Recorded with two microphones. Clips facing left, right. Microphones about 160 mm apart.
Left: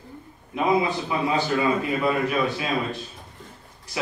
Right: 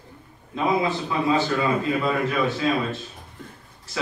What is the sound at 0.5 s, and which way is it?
A man's voice, 15° left (ahead or behind).